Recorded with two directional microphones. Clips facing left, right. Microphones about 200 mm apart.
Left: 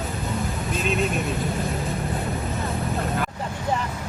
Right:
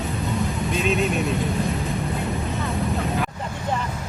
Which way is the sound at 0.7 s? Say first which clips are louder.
Right 1 dB; centre (ahead or behind).